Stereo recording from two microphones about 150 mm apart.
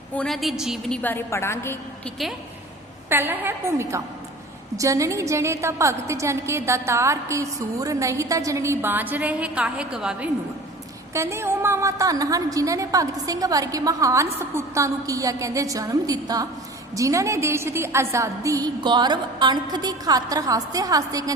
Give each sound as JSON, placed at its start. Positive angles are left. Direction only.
{"t": 0.1, "sound": "a woman's voice", "side_deg": 5}
{"t": 2.0, "sound": "a woman's voice", "side_deg": 0}
{"t": 3.1, "sound": "a woman's voice", "side_deg": -15}
{"t": 11.1, "sound": "a woman's voice", "side_deg": -20}